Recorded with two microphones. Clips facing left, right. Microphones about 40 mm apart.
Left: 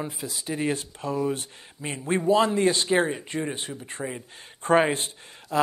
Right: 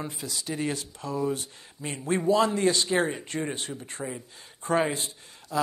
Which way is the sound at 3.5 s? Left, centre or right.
Centre.